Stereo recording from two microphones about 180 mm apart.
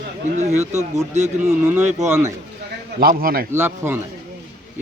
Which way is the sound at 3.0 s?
55° right (ahead or behind).